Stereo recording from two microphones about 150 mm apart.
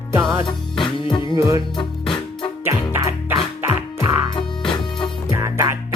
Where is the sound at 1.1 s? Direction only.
30° left (ahead or behind).